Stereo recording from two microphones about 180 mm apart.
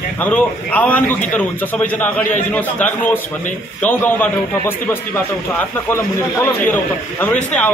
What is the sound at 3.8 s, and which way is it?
Speech, 10° left (ahead or behind).